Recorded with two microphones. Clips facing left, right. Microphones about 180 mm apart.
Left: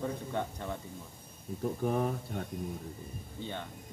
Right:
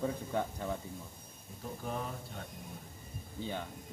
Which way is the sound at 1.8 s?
55° left (ahead or behind).